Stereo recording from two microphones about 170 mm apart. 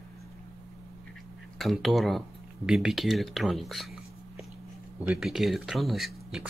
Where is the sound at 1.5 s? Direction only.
Centre (ahead or behind).